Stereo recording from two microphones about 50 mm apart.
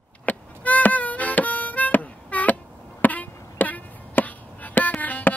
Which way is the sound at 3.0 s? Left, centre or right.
Left.